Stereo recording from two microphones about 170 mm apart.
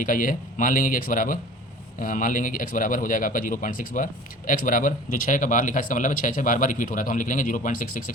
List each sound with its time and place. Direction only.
0.0 s speech: 50° left (ahead or behind)